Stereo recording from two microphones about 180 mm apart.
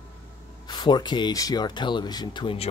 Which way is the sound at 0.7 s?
25° left (ahead or behind).